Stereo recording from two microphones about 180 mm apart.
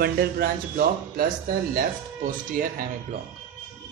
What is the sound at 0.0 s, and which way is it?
Speech, 55° right (ahead or behind).